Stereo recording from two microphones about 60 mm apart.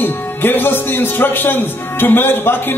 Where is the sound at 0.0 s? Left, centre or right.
Left.